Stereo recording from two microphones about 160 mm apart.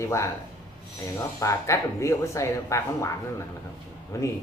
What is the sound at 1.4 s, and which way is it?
Speech, 20° left (ahead or behind).